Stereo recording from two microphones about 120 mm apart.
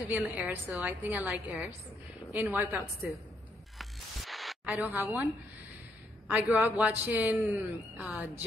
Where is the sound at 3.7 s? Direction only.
Centre (ahead or behind).